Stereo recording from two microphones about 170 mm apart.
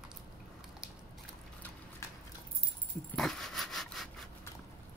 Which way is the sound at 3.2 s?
5° left (ahead or behind).